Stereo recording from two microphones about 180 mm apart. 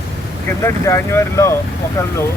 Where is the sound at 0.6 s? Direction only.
15° left (ahead or behind).